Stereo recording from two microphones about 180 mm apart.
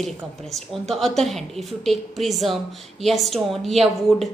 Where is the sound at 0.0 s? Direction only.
Centre (ahead or behind).